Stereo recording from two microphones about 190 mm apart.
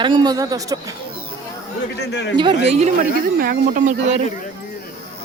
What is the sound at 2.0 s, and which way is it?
Speech, 65° left (ahead or behind).